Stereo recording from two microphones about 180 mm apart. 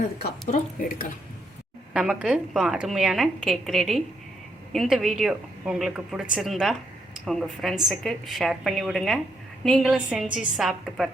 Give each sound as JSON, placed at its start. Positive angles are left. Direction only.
{"t": 0.8, "sound": "speech", "side_deg": 50}
{"t": 1.9, "sound": "a woman's voice", "side_deg": -5}